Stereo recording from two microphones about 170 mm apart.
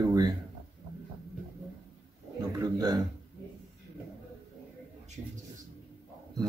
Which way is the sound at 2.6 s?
25° right (ahead or behind).